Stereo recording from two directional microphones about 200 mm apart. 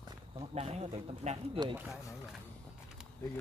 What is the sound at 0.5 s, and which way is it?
Speech, 30° right (ahead or behind).